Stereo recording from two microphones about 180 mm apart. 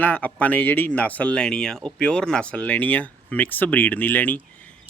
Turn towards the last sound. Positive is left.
turn(degrees=10)  # may be behind; listen again after turning